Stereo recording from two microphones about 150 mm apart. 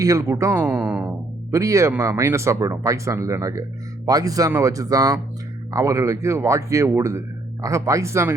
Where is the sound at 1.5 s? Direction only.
20° right (ahead or behind).